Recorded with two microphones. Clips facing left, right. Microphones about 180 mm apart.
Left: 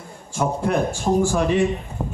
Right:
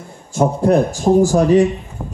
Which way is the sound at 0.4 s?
40° right (ahead or behind).